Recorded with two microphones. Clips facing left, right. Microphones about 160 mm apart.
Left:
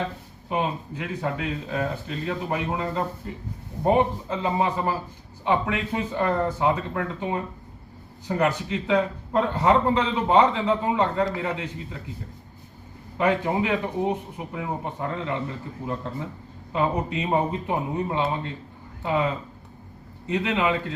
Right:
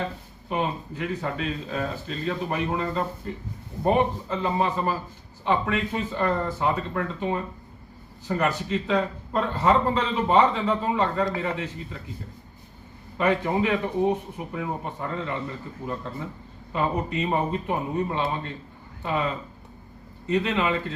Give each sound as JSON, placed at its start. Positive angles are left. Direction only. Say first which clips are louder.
{"t": 0.4, "sound": "a man's voice", "louder": "left 1 dB", "side_deg": 15}
{"t": 13.1, "sound": "a man's voice", "louder": "even", "side_deg": 15}
{"t": 16.7, "sound": "a man's voice", "louder": "left 1 dB", "side_deg": 15}